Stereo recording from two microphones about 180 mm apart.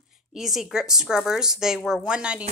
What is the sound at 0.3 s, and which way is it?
A woman's voice, centre (ahead or behind).